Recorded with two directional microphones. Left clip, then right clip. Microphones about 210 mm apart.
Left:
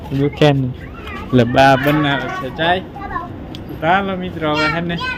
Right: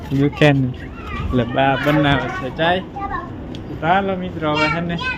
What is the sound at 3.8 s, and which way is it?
Speech, 10° left (ahead or behind).